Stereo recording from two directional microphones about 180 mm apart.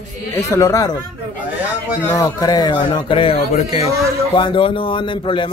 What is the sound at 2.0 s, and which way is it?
A man's voice, 20° left (ahead or behind).